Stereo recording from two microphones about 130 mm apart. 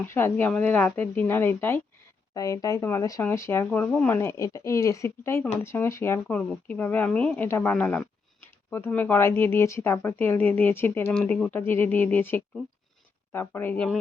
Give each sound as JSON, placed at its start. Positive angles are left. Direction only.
{"t": 0.0, "sound": "speech", "side_deg": 20}